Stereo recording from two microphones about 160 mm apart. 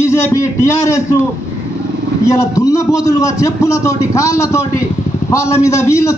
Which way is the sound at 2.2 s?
20° left (ahead or behind).